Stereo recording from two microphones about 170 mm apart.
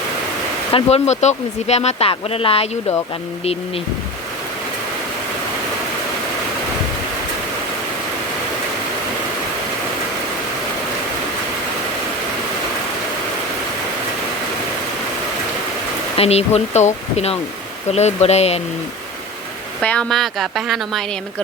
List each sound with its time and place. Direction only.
0.7 s speech: 35° left (ahead or behind)
16.1 s speech: 35° left (ahead or behind)
19.8 s a woman's voice: 5° left (ahead or behind)